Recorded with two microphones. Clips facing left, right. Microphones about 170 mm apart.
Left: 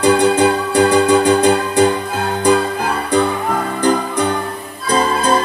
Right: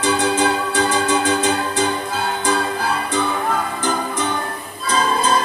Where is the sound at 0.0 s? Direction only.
55° left (ahead or behind).